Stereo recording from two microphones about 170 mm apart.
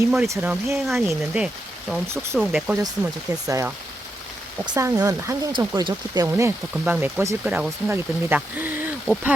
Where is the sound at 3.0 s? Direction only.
15° right (ahead or behind).